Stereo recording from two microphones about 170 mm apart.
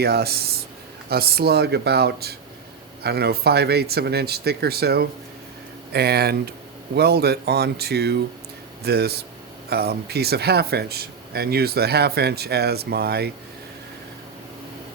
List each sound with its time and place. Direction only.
0.0 s speech: 70° right (ahead or behind)